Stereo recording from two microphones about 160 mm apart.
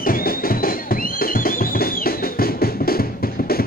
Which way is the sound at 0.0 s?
65° left (ahead or behind).